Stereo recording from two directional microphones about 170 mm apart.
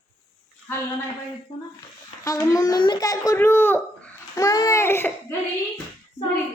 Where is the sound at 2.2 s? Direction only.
20° left (ahead or behind).